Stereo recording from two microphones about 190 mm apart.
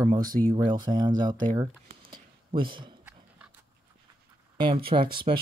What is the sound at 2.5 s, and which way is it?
Speech, 25° right (ahead or behind).